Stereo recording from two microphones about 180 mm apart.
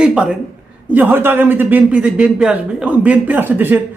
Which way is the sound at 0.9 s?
10° right (ahead or behind).